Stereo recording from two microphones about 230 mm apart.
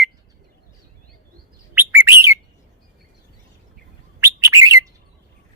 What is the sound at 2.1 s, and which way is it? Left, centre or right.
Bird, centre.